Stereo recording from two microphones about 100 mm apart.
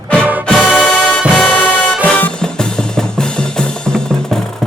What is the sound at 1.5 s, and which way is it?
Music, 15° left (ahead or behind).